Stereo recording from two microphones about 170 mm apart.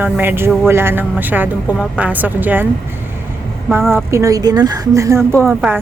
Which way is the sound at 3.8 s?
Centre (ahead or behind).